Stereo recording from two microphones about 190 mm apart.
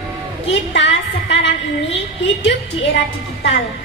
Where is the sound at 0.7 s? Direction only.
70° left (ahead or behind).